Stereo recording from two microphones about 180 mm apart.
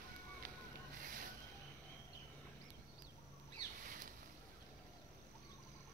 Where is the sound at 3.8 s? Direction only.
50° right (ahead or behind).